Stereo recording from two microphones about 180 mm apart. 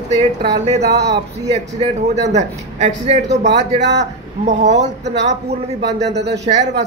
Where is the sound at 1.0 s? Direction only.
70° right (ahead or behind).